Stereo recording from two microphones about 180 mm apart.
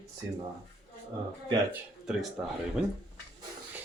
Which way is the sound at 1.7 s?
Centre (ahead or behind).